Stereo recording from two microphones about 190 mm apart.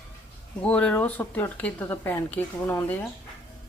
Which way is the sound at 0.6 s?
5° left (ahead or behind).